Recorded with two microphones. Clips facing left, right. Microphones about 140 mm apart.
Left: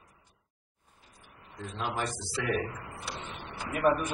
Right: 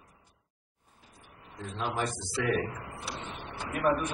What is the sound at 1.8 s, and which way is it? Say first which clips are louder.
A man's voice: right 1 dB; centre (ahead or behind).